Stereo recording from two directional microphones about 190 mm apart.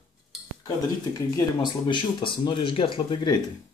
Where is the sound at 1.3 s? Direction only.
25° left (ahead or behind).